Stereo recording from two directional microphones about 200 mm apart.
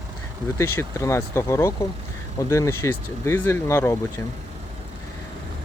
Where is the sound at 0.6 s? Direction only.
15° left (ahead or behind).